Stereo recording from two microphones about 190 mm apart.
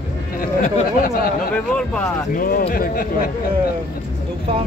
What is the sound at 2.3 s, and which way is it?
Speech, 45° left (ahead or behind).